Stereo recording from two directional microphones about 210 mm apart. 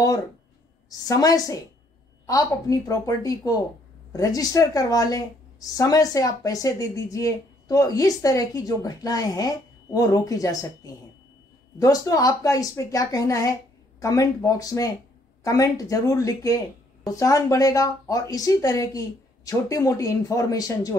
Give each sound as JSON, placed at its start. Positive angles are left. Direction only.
{"t": 0.8, "sound": "a woman's voice", "side_deg": 15}